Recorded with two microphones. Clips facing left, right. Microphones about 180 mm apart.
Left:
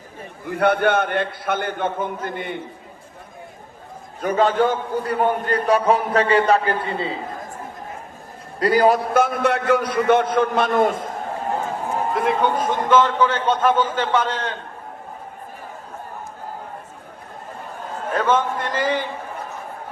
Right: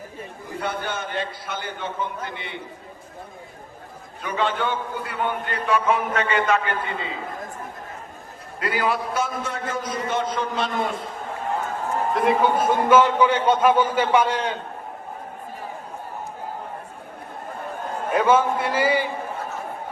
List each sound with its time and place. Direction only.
0.5 s a man's voice: 65° left (ahead or behind); by 2.6 s 50° left (ahead or behind)
4.2 s a man's voice: 45° left (ahead or behind)
8.5 s a man's voice: 40° left (ahead or behind)
9.1 s a man's voice: 60° left (ahead or behind)
12.1 s a man's voice: centre (ahead or behind)
18.1 s a man's voice: 10° right (ahead or behind)